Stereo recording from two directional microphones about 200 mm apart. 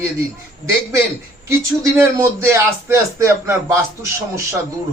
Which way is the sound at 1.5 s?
15° right (ahead or behind).